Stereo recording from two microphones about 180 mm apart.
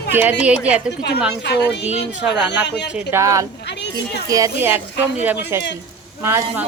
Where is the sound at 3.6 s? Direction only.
70° left (ahead or behind).